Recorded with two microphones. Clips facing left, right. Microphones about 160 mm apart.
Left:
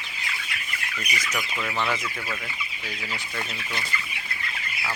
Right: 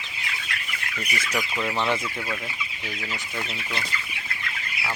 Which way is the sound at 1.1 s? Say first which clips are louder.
Right 3 dB; 30° right (ahead or behind).